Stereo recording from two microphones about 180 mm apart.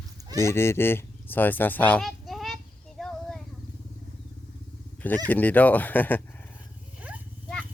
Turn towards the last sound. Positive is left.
turn(degrees=-5)  # may be behind; listen again after turning